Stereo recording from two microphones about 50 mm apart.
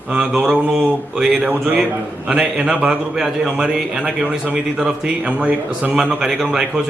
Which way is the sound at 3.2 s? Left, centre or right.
Centre.